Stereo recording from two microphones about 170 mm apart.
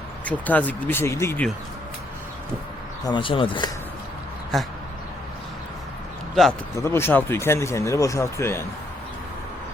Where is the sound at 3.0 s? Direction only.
30° left (ahead or behind).